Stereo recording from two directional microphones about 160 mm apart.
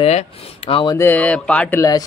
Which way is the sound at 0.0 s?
40° left (ahead or behind).